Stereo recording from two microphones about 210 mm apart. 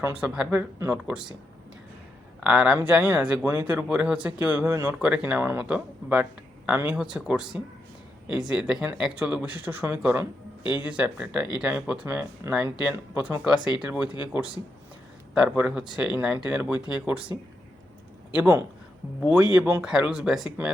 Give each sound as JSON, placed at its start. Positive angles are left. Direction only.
{"t": 0.0, "sound": "speech", "side_deg": -10}
{"t": 2.4, "sound": "speech", "side_deg": -5}
{"t": 10.6, "sound": "speech", "side_deg": 20}
{"t": 10.8, "sound": "speech", "side_deg": -5}
{"t": 18.3, "sound": "speech", "side_deg": -10}